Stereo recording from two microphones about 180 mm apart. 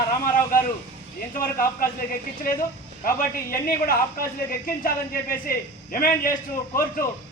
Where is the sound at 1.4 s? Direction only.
50° left (ahead or behind).